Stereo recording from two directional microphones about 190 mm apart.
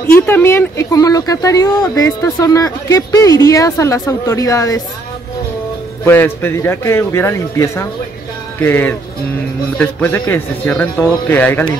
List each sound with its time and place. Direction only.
0.0 s speech: 10° left (ahead or behind)
6.0 s speech: 10° left (ahead or behind)